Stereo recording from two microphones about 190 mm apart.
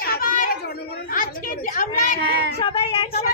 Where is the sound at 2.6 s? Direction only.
30° left (ahead or behind).